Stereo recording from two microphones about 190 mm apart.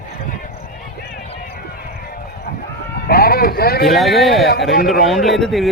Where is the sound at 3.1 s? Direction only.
55° left (ahead or behind).